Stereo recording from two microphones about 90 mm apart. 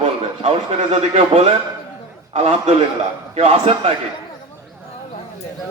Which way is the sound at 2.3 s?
90° right.